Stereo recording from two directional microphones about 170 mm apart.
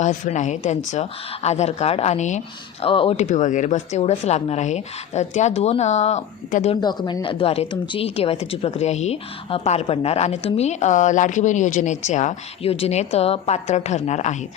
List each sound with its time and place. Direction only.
0.0 s a woman's voice: 45° left (ahead or behind)
2.8 s a woman's voice: 30° left (ahead or behind)
6.8 s a woman's voice: 25° left (ahead or behind); by 14.3 s 45° left (ahead or behind)